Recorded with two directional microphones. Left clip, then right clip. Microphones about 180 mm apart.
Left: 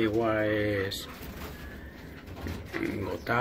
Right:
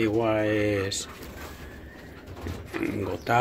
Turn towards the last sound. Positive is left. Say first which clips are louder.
# right 4 dB
turn(degrees=-30)  # may be behind; listen again after turning